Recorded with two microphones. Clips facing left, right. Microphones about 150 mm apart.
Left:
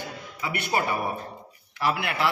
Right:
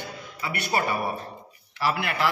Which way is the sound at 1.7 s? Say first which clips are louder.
Even; 15° left (ahead or behind).